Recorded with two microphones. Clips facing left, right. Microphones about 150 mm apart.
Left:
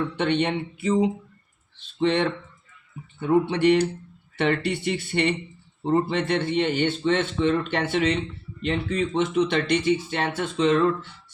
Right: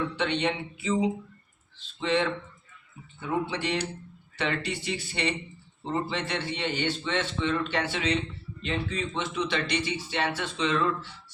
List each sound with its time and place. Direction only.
0.2 s a man's voice: 50° left (ahead or behind)
2.0 s a man's voice: 50° left (ahead or behind)